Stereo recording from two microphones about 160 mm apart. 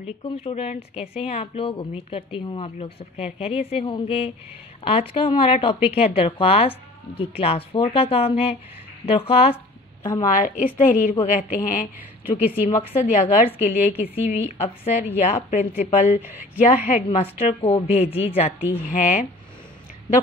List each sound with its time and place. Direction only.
0.2 s speech: 35° left (ahead or behind)
10.2 s a woman's voice: 55° left (ahead or behind)
12.4 s a woman's voice: 10° right (ahead or behind)
12.8 s a woman's voice: 45° left (ahead or behind)
13.6 s a woman's voice: 10° right (ahead or behind)
14.3 s a woman's voice: 45° left (ahead or behind)
16.2 s a woman's voice: 10° right (ahead or behind)
16.6 s speech: 45° left (ahead or behind)
18.9 s a woman's voice: 50° left (ahead or behind)